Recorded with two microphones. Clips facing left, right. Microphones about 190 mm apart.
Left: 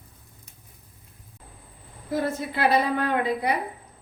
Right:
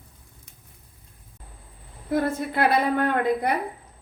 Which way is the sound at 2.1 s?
55° right (ahead or behind).